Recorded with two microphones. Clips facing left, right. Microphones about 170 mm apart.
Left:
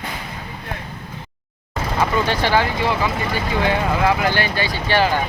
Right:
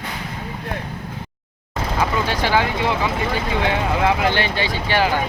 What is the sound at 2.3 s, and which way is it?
Speech, 10° right (ahead or behind).